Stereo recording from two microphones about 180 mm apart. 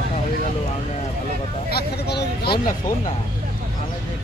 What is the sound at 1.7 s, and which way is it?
Speech, 60° left (ahead or behind).